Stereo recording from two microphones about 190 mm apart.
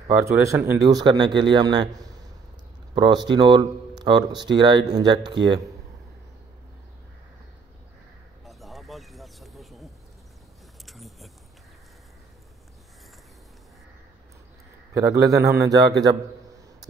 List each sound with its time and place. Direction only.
0.2 s a man's voice: 15° right (ahead or behind)
8.5 s a sound: centre (ahead or behind)
15.0 s a man's voice: 15° right (ahead or behind)